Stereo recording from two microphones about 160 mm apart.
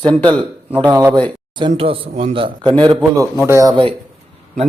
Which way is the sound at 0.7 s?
15° right (ahead or behind).